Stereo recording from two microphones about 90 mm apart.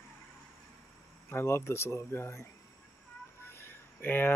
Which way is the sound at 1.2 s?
30° left (ahead or behind).